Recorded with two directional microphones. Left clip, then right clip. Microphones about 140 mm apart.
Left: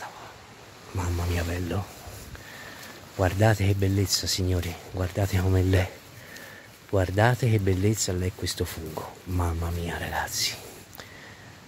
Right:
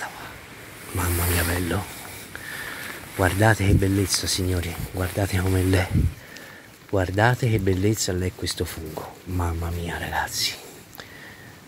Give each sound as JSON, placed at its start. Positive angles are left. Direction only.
{"t": 1.0, "sound": "speech", "side_deg": 15}
{"t": 3.2, "sound": "speech", "side_deg": 30}
{"t": 6.9, "sound": "speech", "side_deg": 35}
{"t": 8.5, "sound": "speech", "side_deg": 35}
{"t": 9.4, "sound": "speech", "side_deg": 25}